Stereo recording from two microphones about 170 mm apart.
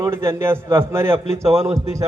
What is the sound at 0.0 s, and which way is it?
A man's voice, 15° right (ahead or behind).